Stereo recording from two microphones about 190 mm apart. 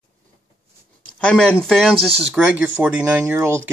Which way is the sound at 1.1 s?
5° left (ahead or behind).